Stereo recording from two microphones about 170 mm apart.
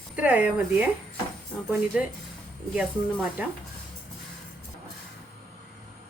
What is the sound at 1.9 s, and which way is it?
A woman's voice, 5° right (ahead or behind).